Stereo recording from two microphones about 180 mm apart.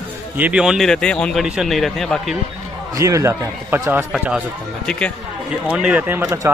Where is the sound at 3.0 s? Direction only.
15° right (ahead or behind).